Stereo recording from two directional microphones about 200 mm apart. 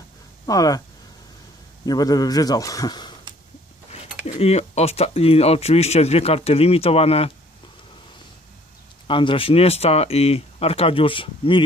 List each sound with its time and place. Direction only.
0.5 s speech: 20° left (ahead or behind)
1.9 s speech: 20° left (ahead or behind)
4.3 s speech: 30° left (ahead or behind)
9.0 s speech: 25° left (ahead or behind)